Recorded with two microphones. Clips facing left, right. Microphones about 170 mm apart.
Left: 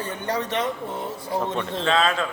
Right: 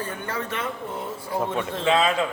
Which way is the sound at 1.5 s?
15° right (ahead or behind).